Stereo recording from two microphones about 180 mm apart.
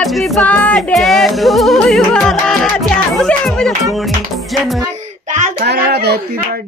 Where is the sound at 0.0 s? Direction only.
Centre (ahead or behind).